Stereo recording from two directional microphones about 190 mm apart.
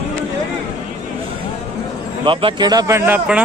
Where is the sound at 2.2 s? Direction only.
25° right (ahead or behind); by 3.4 s 10° right (ahead or behind).